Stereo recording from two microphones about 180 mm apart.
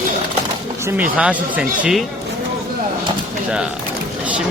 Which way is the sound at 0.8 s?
10° right (ahead or behind).